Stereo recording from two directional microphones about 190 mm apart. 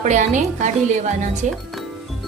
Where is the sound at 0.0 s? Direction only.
40° right (ahead or behind).